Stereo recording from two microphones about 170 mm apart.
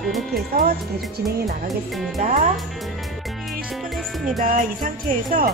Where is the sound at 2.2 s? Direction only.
45° right (ahead or behind).